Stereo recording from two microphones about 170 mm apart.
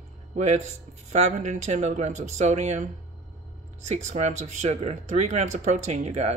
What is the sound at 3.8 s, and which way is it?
Speech, 45° right (ahead or behind).